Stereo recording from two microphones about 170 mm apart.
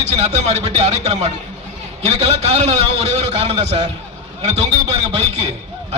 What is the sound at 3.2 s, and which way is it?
Speech, 35° right (ahead or behind).